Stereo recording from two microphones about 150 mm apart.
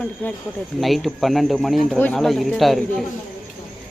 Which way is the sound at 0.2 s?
10° left (ahead or behind).